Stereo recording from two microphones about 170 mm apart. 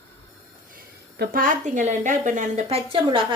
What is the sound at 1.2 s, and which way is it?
A woman's voice, 55° right (ahead or behind).